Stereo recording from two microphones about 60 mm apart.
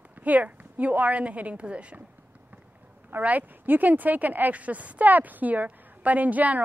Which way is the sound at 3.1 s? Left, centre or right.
Right.